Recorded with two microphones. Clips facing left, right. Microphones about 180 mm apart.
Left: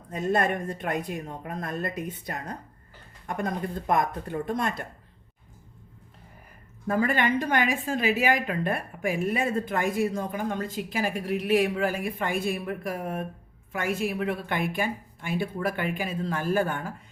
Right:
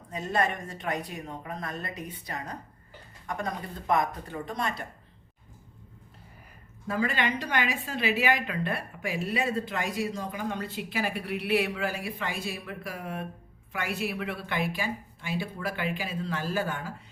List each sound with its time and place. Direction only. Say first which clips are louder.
0.1 s a woman's voice: left 4 dB; 50° left (ahead or behind)
6.8 s a woman's voice: left 4 dB; 50° left (ahead or behind)